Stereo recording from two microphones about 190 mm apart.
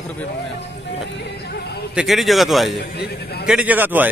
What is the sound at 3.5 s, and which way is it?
Speech, 5° right (ahead or behind).